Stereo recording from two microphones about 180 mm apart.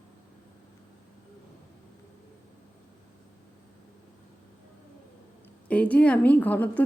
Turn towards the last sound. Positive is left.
turn(degrees=10)  # may be behind; listen again after turning